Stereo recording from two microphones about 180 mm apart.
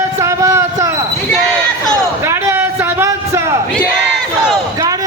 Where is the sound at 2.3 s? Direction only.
10° right (ahead or behind).